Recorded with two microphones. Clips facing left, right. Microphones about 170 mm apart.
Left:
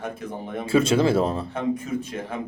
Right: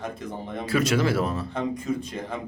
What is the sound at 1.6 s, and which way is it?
Speech, 5° left (ahead or behind).